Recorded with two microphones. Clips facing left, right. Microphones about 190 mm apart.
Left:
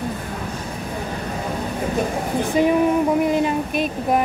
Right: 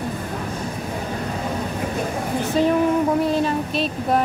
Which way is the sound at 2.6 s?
15° left (ahead or behind).